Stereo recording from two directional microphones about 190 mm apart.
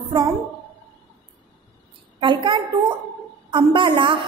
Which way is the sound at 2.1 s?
25° right (ahead or behind).